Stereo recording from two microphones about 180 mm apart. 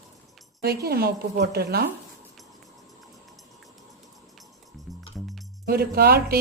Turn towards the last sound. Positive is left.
turn(degrees=-60)  # may be behind; listen again after turning